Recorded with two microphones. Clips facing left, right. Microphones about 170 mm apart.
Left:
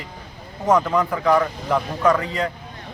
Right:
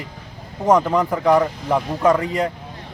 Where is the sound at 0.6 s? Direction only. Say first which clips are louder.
Right 2 dB; 20° right (ahead or behind).